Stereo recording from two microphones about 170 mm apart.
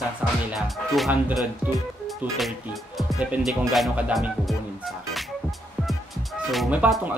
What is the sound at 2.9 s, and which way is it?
Speech, centre (ahead or behind).